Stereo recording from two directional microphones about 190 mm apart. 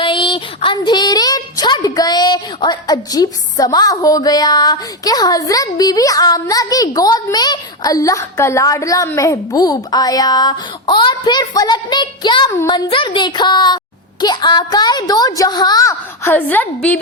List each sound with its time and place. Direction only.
0.0 s a woman's voice: 25° left (ahead or behind); by 17.0 s 10° left (ahead or behind)